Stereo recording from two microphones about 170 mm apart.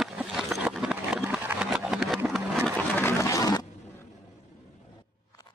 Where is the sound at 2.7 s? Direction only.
10° left (ahead or behind).